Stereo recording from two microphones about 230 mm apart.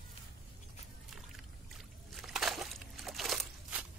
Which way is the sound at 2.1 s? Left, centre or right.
Centre.